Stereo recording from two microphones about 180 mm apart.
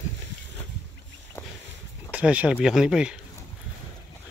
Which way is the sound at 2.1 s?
5° right (ahead or behind).